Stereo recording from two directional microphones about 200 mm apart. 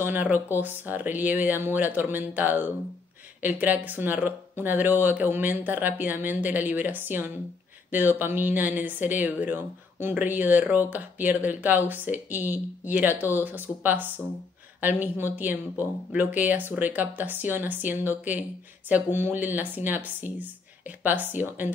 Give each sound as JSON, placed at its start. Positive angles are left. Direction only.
{"t": 0.0, "sound": "speech", "side_deg": -10}